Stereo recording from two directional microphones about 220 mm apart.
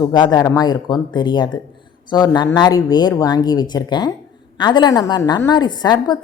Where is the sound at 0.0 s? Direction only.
20° left (ahead or behind).